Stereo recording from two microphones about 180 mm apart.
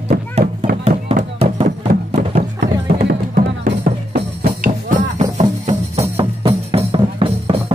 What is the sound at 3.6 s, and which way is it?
Music, 50° right (ahead or behind).